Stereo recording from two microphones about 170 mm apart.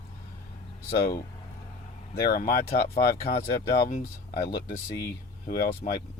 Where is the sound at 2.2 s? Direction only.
60° left (ahead or behind).